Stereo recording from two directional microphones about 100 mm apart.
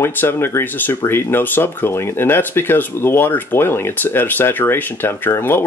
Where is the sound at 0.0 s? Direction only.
25° left (ahead or behind).